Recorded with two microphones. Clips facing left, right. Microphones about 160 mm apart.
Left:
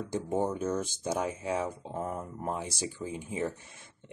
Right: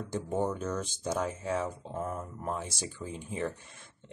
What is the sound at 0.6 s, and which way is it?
Speech, 10° left (ahead or behind).